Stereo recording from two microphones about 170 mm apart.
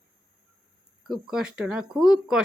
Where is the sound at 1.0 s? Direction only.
Centre (ahead or behind).